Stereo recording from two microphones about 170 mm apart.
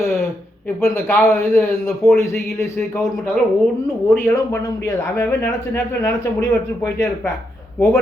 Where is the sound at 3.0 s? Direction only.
Centre (ahead or behind).